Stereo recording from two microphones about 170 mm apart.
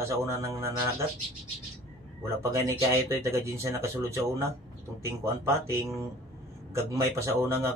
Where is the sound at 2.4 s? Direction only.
15° right (ahead or behind).